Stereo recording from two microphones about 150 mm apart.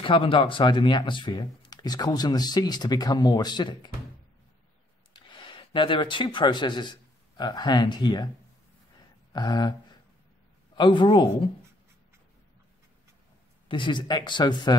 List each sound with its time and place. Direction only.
0.0 s speech: 35° left (ahead or behind)
5.1 s speech: 35° left (ahead or behind)
9.3 s speech: 30° left (ahead or behind)
10.8 s speech: 35° left (ahead or behind)
13.7 s speech: 30° left (ahead or behind)